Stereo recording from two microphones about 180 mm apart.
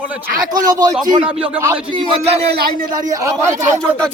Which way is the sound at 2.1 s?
35° right (ahead or behind).